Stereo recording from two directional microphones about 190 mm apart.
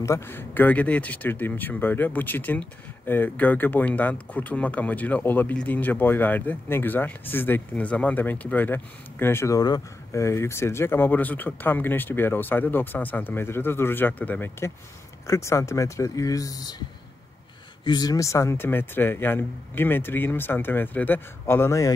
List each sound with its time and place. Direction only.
0.0 s speech: 15° left (ahead or behind)
17.8 s speech: 20° left (ahead or behind)